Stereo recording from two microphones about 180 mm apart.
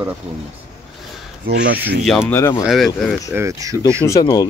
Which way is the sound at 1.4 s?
60° right (ahead or behind).